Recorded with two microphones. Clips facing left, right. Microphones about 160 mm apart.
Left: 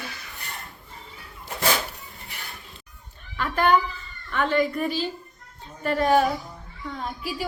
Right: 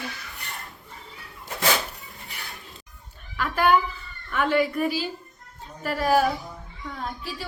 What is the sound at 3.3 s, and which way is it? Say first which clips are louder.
A woman's voice: even; 5° right (ahead or behind).